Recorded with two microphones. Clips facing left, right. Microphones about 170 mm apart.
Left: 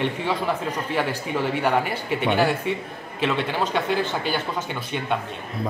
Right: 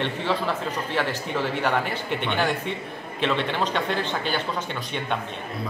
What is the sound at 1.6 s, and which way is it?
A man's voice, 10° left (ahead or behind).